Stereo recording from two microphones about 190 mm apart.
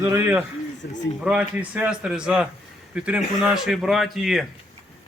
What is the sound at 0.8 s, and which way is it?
Speech, 60° left (ahead or behind).